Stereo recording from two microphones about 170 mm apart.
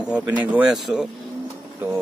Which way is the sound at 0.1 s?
5° right (ahead or behind).